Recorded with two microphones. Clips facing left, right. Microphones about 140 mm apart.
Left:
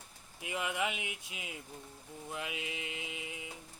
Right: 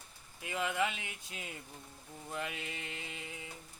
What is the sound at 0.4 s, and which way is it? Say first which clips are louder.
Speech: right 1 dB; 15° left (ahead or behind).